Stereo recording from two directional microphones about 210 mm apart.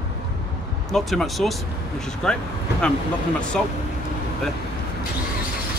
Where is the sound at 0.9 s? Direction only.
Centre (ahead or behind).